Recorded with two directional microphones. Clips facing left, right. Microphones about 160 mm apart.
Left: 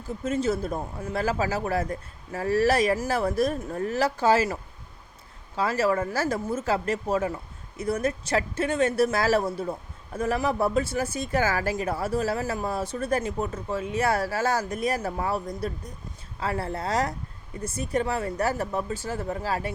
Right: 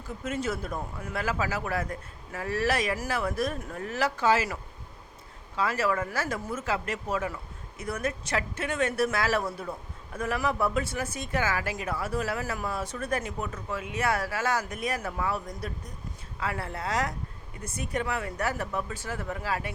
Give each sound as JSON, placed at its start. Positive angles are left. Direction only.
{"t": 0.3, "sound": "speech", "side_deg": 25}
{"t": 5.5, "sound": "speech", "side_deg": 35}